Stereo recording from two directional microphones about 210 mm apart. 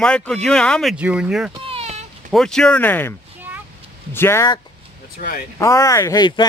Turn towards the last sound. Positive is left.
turn(degrees=20)  # may be behind; listen again after turning